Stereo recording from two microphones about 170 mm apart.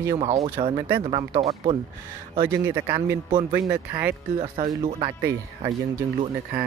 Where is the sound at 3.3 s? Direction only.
30° right (ahead or behind).